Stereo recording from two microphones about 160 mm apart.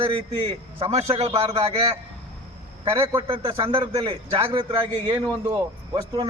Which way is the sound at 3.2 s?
35° right (ahead or behind).